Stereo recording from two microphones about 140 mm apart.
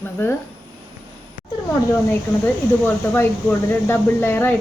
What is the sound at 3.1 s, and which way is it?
Speech, 15° left (ahead or behind).